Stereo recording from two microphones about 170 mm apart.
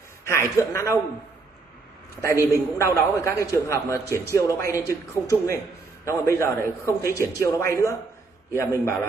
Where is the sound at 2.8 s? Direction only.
15° left (ahead or behind).